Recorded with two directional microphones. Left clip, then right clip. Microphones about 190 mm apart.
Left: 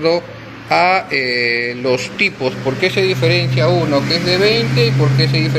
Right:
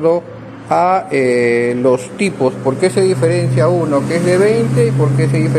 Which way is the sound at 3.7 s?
10° right (ahead or behind).